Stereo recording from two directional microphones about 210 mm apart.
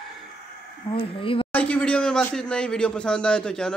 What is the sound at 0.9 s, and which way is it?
Speech, 25° left (ahead or behind).